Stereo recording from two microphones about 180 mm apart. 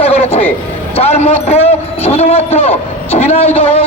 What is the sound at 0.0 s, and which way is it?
Music, 35° left (ahead or behind).